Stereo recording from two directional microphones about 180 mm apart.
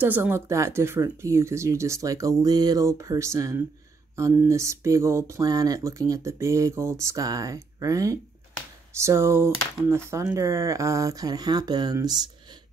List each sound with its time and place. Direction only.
0.0 s speech: 10° right (ahead or behind)